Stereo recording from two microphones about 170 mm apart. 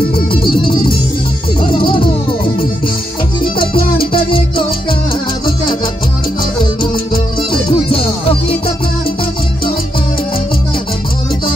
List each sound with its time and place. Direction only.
0.3 s music: 30° left (ahead or behind)
3.5 s music: 30° left (ahead or behind)
7.6 s music: 35° left (ahead or behind)